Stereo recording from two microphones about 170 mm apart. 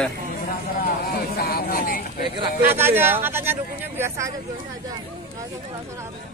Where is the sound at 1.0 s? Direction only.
65° left (ahead or behind).